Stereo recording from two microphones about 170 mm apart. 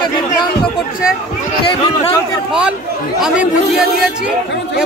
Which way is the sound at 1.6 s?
30° left (ahead or behind).